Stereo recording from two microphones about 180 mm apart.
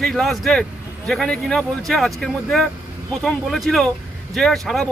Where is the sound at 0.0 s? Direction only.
Centre (ahead or behind).